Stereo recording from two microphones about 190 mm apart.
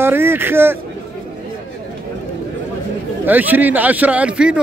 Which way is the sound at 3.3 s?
10° right (ahead or behind).